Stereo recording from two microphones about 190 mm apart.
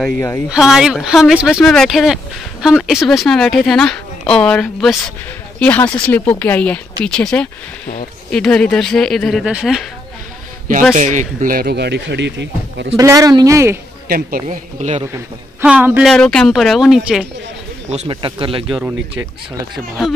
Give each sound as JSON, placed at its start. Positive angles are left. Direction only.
{"t": 0.0, "sound": "speech", "side_deg": 10}
{"t": 0.5, "sound": "speech", "side_deg": 0}
{"t": 11.0, "sound": "speech", "side_deg": -40}
{"t": 12.9, "sound": "a man's voice", "side_deg": -15}
{"t": 14.0, "sound": "speech", "side_deg": -50}
{"t": 15.6, "sound": "a man's voice", "side_deg": -10}
{"t": 16.1, "sound": "speech", "side_deg": 5}
{"t": 18.0, "sound": "speech", "side_deg": -25}
{"t": 18.7, "sound": "speech", "side_deg": -5}